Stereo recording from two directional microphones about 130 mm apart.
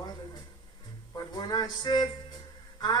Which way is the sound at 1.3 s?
35° left (ahead or behind).